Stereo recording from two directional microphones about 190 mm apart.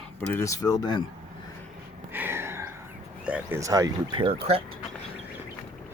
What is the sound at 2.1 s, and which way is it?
Gasp, 10° right (ahead or behind).